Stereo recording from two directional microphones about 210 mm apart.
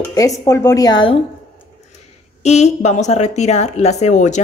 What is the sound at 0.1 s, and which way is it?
Speech, 15° left (ahead or behind).